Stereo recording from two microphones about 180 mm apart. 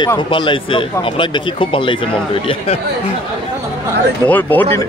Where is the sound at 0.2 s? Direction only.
25° left (ahead or behind).